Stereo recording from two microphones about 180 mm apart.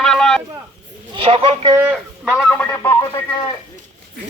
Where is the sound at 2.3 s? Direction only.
10° left (ahead or behind).